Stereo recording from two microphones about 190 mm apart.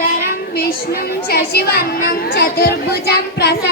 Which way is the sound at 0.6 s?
50° left (ahead or behind).